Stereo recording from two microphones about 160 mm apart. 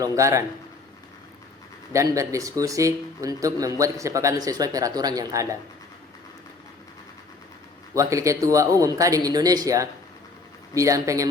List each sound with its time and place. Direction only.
0.0 s speech: 20° right (ahead or behind)
1.9 s speech: 20° right (ahead or behind)
7.9 s speech: 20° right (ahead or behind)